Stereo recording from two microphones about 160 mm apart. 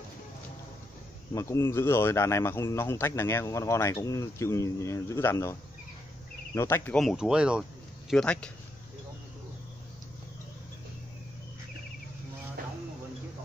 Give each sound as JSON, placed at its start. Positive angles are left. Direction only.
{"t": 1.3, "sound": "speech", "side_deg": 20}
{"t": 7.0, "sound": "speech", "side_deg": 0}
{"t": 8.1, "sound": "speech", "side_deg": 5}